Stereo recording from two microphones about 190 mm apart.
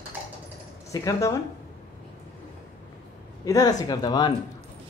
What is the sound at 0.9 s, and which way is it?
Speech, 15° left (ahead or behind).